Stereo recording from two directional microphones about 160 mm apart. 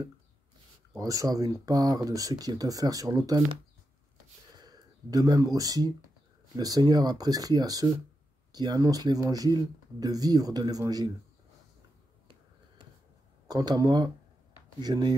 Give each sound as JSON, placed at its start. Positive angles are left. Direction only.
{"t": 0.9, "sound": "speech", "side_deg": -20}
{"t": 4.6, "sound": "speech", "side_deg": -25}
{"t": 13.5, "sound": "speech", "side_deg": -25}